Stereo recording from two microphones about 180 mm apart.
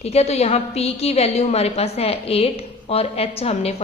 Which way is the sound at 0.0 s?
35° left (ahead or behind).